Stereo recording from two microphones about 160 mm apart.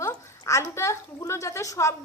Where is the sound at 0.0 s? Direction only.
15° left (ahead or behind).